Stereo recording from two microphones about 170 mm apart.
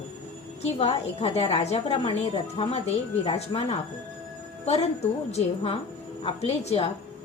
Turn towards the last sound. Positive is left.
turn(degrees=35)  # may be behind; listen again after turning